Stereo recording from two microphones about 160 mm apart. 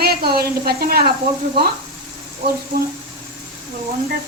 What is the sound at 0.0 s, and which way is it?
Speech, 75° right (ahead or behind).